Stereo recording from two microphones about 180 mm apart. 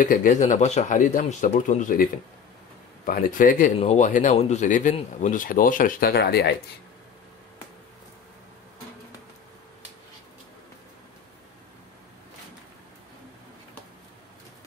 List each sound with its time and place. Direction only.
0.0 s speech: 50° left (ahead or behind)
3.1 s speech: 50° left (ahead or behind)